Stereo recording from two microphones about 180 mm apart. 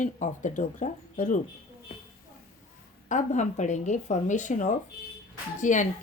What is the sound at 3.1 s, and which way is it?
Speech, 45° left (ahead or behind).